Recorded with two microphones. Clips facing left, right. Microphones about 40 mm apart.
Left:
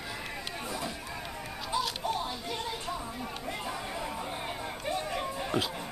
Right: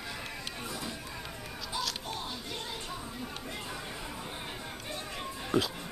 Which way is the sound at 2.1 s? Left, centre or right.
Centre.